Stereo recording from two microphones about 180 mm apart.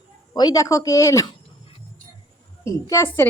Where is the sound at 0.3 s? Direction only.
20° left (ahead or behind).